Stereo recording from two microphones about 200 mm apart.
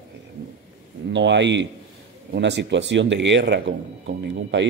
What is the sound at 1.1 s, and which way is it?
A man's voice, 65° right (ahead or behind).